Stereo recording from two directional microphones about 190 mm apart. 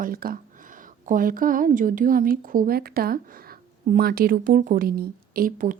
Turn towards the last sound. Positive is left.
turn(degrees=-45)  # may be behind; listen again after turning